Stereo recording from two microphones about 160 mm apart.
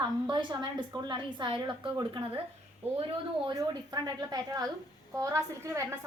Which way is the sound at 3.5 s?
25° right (ahead or behind).